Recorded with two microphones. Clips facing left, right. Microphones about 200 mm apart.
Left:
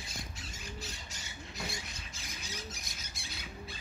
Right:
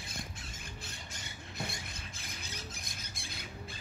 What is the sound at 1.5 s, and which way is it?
Squawk, 55° right (ahead or behind).